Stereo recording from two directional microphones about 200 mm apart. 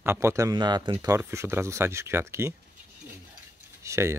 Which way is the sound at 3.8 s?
15° right (ahead or behind).